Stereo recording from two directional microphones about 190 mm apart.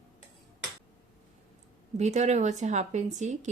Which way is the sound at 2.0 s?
35° right (ahead or behind).